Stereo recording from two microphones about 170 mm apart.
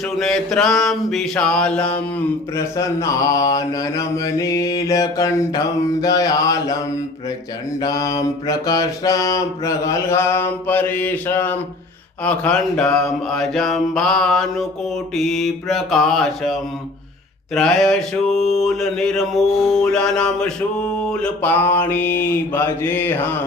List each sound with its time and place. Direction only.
0.2 s mantra: 5° left (ahead or behind)
2.6 s mantra: 20° left (ahead or behind)
7.8 s mantra: 20° left (ahead or behind); by 17.9 s 5° left (ahead or behind)
18.3 s music: 40° left (ahead or behind)
18.5 s mantra: centre (ahead or behind)
19.8 s a sound: 5° left (ahead or behind)